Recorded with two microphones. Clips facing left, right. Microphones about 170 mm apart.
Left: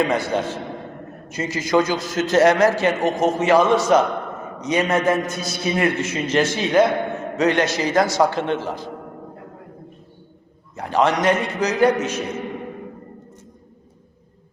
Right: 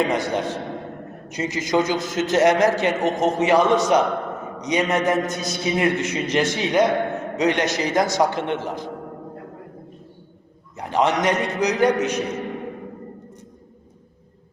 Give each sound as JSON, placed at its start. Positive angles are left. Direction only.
{"t": 0.1, "sound": "a man's voice", "side_deg": -15}
{"t": 10.8, "sound": "a man's voice", "side_deg": -20}